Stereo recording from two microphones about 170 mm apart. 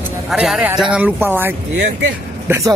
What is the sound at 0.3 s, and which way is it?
A man's voice, 5° right (ahead or behind).